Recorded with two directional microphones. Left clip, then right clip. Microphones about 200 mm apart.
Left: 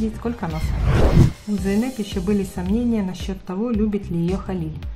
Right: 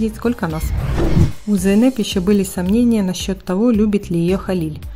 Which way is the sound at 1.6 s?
40° right (ahead or behind).